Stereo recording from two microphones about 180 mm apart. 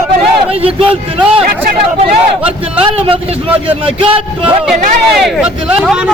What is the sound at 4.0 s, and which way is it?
Speech, 30° right (ahead or behind).